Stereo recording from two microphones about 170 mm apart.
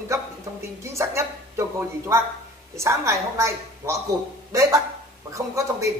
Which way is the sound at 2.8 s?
15° right (ahead or behind).